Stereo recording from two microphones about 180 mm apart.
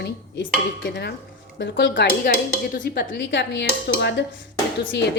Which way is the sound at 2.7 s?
50° left (ahead or behind).